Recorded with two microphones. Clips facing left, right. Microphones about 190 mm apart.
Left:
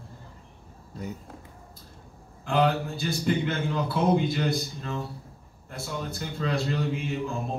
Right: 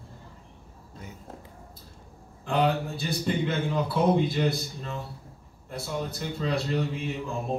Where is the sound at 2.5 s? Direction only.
Centre (ahead or behind).